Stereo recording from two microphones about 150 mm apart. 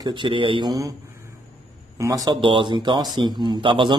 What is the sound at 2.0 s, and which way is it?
Speech, 25° right (ahead or behind).